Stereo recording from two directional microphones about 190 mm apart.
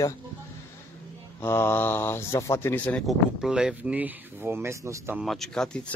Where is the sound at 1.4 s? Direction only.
10° left (ahead or behind); by 5.2 s 15° right (ahead or behind).